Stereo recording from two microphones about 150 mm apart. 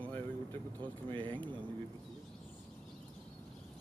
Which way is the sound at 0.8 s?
30° right (ahead or behind).